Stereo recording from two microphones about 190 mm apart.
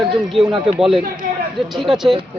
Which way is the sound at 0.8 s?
Centre (ahead or behind).